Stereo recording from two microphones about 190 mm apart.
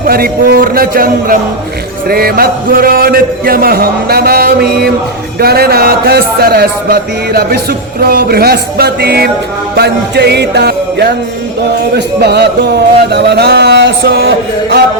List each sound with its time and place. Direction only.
0.1 s a man's voice: 55° right (ahead or behind)
5.4 s music: 55° right (ahead or behind)